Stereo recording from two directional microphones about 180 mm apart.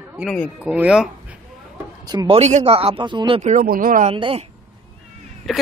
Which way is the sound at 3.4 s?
50° right (ahead or behind).